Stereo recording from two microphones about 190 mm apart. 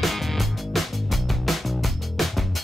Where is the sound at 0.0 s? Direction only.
Centre (ahead or behind).